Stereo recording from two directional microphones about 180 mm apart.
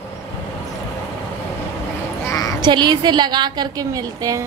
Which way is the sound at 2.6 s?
25° right (ahead or behind).